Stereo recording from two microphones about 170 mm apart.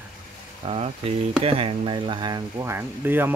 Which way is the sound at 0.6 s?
35° right (ahead or behind).